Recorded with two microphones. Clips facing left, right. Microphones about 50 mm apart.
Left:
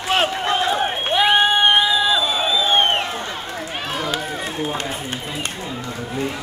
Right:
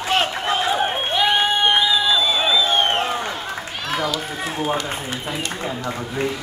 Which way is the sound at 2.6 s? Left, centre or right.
Left.